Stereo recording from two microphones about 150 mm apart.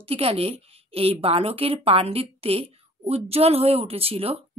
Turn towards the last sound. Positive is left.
turn(degrees=-40)  # may be behind; listen again after turning